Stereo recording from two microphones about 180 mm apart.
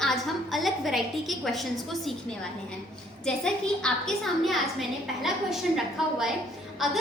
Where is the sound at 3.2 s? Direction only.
5° left (ahead or behind).